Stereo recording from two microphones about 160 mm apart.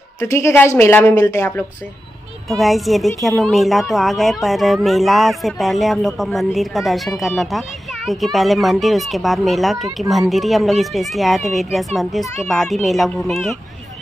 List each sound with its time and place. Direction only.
0.2 s a woman's voice: 15° left (ahead or behind)
2.6 s speech: centre (ahead or behind)